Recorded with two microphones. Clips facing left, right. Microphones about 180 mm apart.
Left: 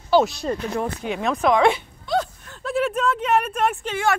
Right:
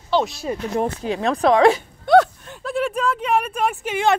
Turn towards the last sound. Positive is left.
turn(degrees=-15)  # may be behind; listen again after turning